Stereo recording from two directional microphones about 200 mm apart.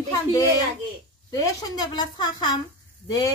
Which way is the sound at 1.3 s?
20° left (ahead or behind).